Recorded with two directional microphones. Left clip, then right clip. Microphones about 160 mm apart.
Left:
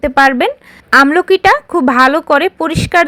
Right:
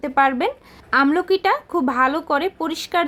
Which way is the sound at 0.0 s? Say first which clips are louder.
Left 8 dB; 25° left (ahead or behind).